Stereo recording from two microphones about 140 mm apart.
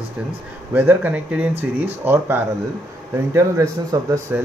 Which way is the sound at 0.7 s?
10° right (ahead or behind).